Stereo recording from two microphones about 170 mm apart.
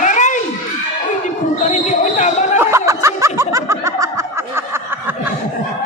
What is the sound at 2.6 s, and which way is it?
Snicker, 15° right (ahead or behind).